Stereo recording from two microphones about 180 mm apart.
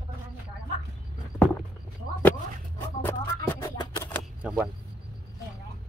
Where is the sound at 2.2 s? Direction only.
10° left (ahead or behind).